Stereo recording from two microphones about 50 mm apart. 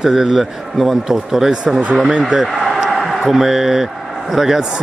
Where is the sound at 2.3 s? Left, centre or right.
Centre.